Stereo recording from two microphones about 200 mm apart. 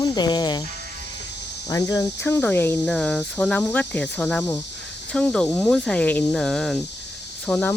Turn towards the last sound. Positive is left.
turn(degrees=5)  # may be behind; listen again after turning